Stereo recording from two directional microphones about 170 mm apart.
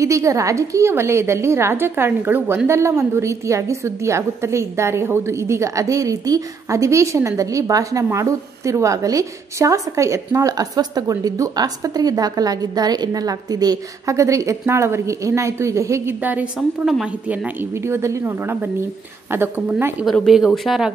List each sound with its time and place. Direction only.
0.0 s a woman's voice: 20° right (ahead or behind); by 20.9 s centre (ahead or behind)